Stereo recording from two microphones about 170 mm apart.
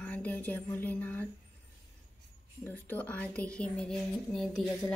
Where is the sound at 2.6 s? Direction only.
10° left (ahead or behind).